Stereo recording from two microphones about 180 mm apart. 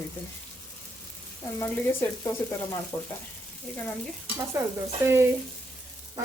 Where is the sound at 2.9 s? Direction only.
20° left (ahead or behind).